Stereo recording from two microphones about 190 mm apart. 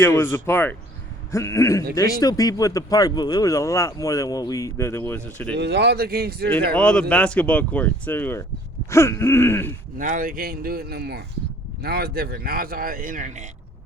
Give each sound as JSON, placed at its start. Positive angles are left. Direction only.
{"t": 0.0, "sound": "speech", "side_deg": 15}
{"t": 5.5, "sound": "speech", "side_deg": -65}
{"t": 6.7, "sound": "speech", "side_deg": 5}
{"t": 10.0, "sound": "speech", "side_deg": -45}